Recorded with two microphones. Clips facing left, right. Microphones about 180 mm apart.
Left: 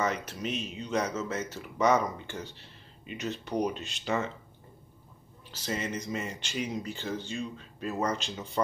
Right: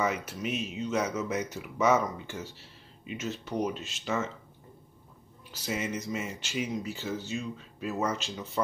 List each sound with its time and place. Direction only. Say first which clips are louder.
0.0 s speech: right 1 dB; 10° right (ahead or behind)
5.5 s speech: right 1 dB; 10° right (ahead or behind)